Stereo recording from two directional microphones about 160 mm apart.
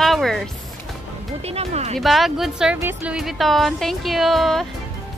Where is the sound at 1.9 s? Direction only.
Centre (ahead or behind).